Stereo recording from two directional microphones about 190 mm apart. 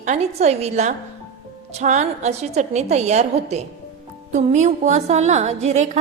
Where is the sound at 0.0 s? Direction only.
35° right (ahead or behind).